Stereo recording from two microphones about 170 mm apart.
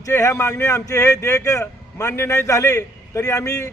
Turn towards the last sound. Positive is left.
turn(degrees=20)  # may be behind; listen again after turning